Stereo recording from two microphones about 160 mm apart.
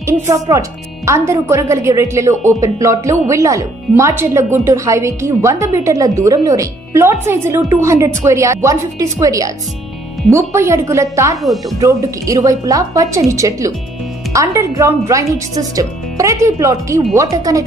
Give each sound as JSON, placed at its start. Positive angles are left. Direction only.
{"t": 0.0, "sound": "a woman's voice", "side_deg": -20}